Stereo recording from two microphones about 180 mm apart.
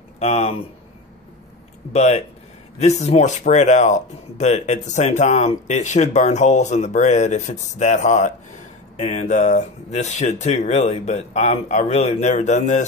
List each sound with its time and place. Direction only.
0.2 s speech: 35° left (ahead or behind)
1.9 s speech: 35° left (ahead or behind)